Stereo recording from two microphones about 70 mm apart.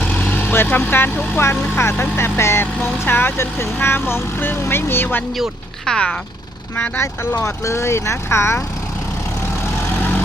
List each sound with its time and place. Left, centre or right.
0.0 s vehicle: left
0.9 s speech: left
1.7 s speech: left
5.8 s speech: centre
6.7 s speech: left
7.4 s speech: left